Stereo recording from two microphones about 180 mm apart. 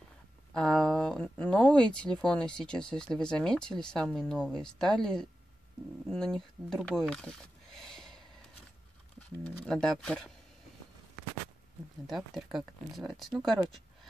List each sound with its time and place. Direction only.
0.5 s speech: 5° left (ahead or behind)
9.4 s speech: 5° left (ahead or behind)
12.1 s speech: centre (ahead or behind)